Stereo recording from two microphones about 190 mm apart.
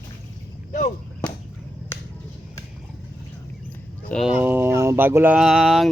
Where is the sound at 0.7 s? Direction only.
40° left (ahead or behind).